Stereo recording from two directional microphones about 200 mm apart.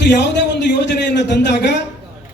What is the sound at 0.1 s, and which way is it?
A man's voice, 60° left (ahead or behind).